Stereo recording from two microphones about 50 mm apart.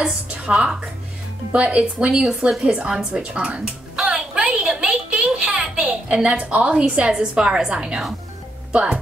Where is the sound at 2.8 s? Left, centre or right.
Centre.